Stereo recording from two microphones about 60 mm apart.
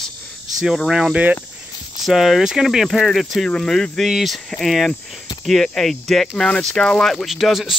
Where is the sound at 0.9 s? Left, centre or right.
Centre.